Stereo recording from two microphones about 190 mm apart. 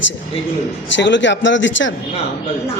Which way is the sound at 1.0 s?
70° left (ahead or behind).